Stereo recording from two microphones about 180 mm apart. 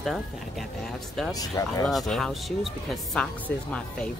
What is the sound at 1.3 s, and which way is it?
Speech, 20° left (ahead or behind).